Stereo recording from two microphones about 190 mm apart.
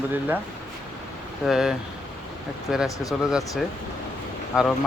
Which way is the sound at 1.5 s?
5° right (ahead or behind).